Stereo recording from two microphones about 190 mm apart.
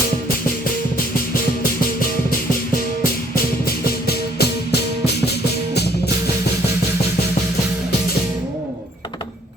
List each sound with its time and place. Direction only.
4.0 s music: 55° left (ahead or behind)